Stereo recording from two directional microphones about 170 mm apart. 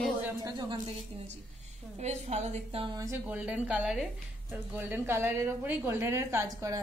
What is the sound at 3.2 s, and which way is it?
A woman's voice, 5° right (ahead or behind).